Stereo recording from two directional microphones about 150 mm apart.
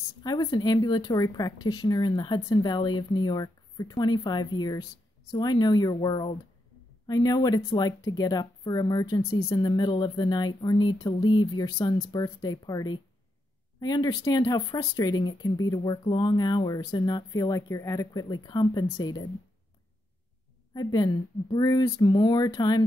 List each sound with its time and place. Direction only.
0.2 s speech: 25° left (ahead or behind)
20.7 s speech: 25° left (ahead or behind)